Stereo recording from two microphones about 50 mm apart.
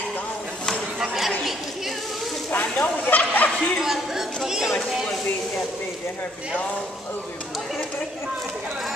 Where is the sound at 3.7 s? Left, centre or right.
Centre.